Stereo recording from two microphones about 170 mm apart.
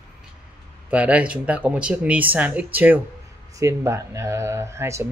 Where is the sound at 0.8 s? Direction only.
10° right (ahead or behind).